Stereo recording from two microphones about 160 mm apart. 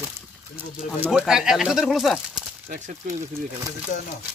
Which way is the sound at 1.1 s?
5° right (ahead or behind).